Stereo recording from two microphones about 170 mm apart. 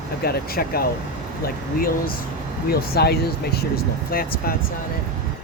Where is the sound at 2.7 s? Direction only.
65° left (ahead or behind).